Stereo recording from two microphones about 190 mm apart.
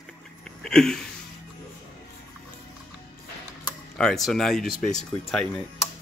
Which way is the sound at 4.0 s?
Centre (ahead or behind).